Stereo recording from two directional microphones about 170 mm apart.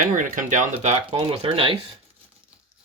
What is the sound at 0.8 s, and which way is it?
Speech, 40° right (ahead or behind).